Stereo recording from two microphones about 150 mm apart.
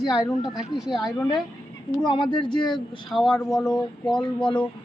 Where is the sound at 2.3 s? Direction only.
30° left (ahead or behind).